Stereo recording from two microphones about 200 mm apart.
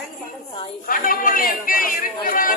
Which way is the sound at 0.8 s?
45° left (ahead or behind).